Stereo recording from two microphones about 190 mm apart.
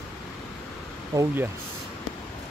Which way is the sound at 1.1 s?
10° right (ahead or behind).